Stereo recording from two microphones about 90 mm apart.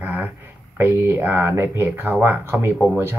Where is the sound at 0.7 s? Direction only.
30° right (ahead or behind).